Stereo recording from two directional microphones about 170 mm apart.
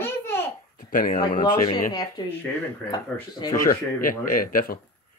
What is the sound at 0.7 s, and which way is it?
Speech, 55° left (ahead or behind).